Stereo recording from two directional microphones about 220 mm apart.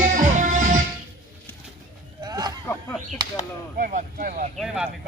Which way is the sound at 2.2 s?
20° right (ahead or behind).